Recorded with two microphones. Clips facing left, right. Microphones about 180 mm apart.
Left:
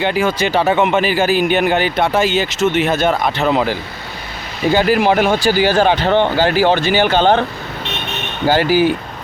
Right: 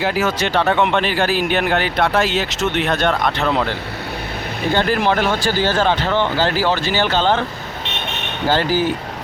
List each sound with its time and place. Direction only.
0.0 s speech: centre (ahead or behind); by 7.2 s 15° left (ahead or behind)
7.2 s speech: 55° left (ahead or behind)
8.4 s speech: 10° left (ahead or behind)